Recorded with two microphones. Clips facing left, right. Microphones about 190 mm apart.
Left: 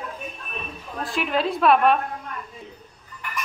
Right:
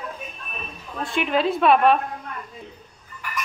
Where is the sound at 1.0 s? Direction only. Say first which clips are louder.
Right 2 dB; centre (ahead or behind).